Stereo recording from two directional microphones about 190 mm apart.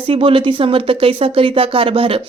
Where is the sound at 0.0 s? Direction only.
30° right (ahead or behind).